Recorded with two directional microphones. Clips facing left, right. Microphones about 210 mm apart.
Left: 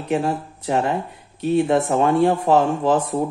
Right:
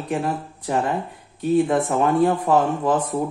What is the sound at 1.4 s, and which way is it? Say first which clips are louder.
Speech: left 1 dB; 25° left (ahead or behind).